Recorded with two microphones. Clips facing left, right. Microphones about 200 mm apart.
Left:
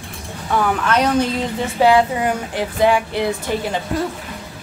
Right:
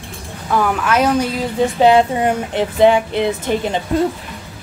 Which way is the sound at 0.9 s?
5° right (ahead or behind).